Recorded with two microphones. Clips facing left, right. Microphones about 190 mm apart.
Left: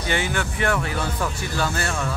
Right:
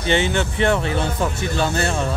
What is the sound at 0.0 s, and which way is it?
Speech, 25° right (ahead or behind).